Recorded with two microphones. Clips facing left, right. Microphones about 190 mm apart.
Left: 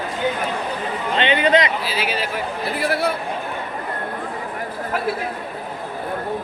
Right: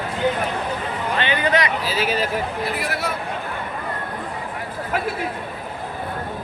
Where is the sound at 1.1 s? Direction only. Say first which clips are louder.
Left 4 dB; 20° left (ahead or behind).